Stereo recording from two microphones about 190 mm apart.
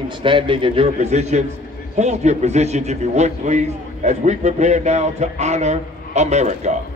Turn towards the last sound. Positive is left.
turn(degrees=-35)  # may be behind; listen again after turning